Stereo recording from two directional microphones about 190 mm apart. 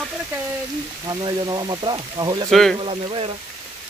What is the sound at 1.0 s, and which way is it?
Speech, 20° right (ahead or behind).